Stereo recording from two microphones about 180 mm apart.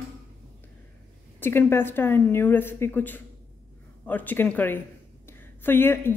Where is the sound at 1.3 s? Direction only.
10° left (ahead or behind).